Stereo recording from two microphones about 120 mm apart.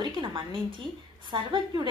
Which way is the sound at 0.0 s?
40° right (ahead or behind).